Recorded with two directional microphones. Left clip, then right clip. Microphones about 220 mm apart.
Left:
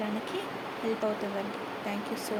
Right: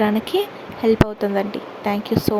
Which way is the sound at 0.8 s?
50° right (ahead or behind).